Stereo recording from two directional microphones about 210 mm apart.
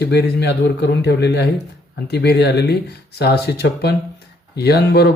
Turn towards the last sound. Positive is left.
turn(degrees=50)  # may be behind; listen again after turning